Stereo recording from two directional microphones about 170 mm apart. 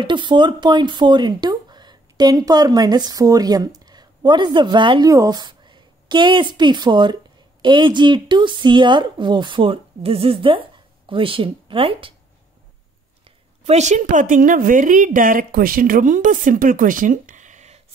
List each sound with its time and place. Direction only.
0.0 s speech: 30° right (ahead or behind)
13.7 s a woman's voice: 45° right (ahead or behind)